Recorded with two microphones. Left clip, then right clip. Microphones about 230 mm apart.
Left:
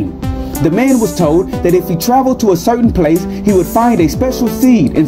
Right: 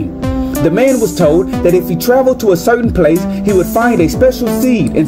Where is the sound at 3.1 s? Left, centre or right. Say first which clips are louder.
Even; centre.